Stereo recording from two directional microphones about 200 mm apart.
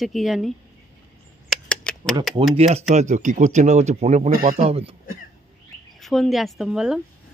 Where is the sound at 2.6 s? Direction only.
30° right (ahead or behind).